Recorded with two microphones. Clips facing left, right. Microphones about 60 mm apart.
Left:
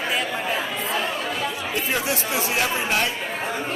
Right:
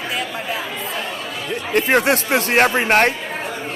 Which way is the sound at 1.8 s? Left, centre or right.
Right.